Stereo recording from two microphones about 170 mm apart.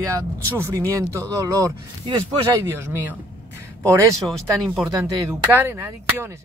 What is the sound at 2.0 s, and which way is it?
Speech, 30° right (ahead or behind).